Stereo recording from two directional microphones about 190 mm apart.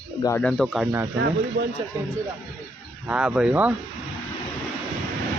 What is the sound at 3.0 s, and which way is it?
Speech, 5° right (ahead or behind).